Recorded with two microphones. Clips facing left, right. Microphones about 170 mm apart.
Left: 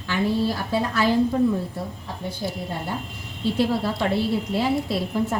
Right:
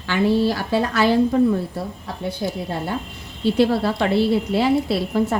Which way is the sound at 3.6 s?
75° right (ahead or behind).